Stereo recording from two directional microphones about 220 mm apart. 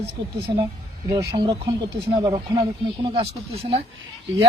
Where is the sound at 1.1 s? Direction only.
20° right (ahead or behind).